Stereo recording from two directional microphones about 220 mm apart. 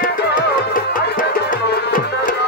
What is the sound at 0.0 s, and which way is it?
Music, 45° left (ahead or behind).